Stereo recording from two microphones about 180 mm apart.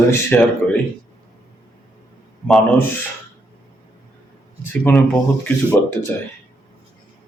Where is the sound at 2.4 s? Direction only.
Centre (ahead or behind).